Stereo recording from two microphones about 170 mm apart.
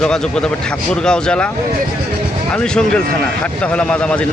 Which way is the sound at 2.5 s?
5° left (ahead or behind).